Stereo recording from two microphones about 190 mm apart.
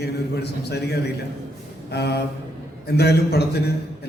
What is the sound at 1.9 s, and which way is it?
A man's voice, 60° left (ahead or behind).